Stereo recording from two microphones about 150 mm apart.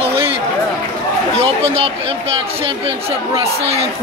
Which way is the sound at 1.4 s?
40° right (ahead or behind).